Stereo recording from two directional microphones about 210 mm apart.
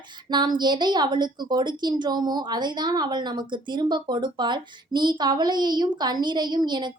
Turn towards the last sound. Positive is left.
turn(degrees=-20)  # may be behind; listen again after turning